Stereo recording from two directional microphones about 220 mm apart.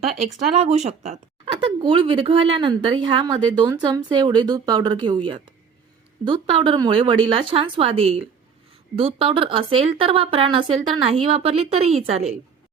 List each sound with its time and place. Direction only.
0.2 s speech: 30° right (ahead or behind)